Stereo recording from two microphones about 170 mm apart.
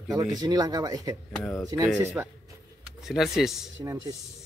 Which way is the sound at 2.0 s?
15° right (ahead or behind).